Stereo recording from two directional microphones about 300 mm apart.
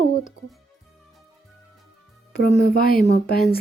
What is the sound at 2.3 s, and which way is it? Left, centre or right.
Speech, left.